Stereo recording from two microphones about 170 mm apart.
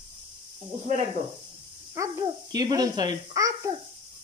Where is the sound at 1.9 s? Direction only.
20° right (ahead or behind).